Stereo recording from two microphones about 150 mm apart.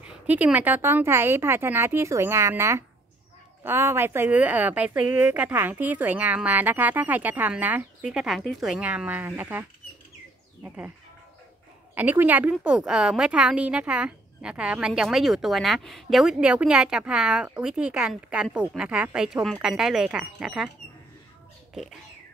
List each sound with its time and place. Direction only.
0.0 s speech: 10° right (ahead or behind)
11.9 s a woman's voice: 10° right (ahead or behind)